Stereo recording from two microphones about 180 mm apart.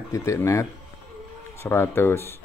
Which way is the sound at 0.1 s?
15° left (ahead or behind).